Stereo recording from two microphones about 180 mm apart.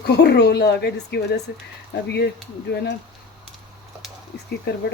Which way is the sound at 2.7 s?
65° left (ahead or behind).